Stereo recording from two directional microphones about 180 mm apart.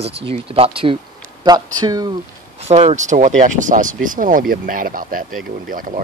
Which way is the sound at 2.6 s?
40° right (ahead or behind).